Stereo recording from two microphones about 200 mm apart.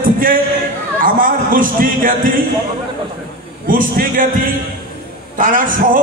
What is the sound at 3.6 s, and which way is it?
Speech, 45° right (ahead or behind).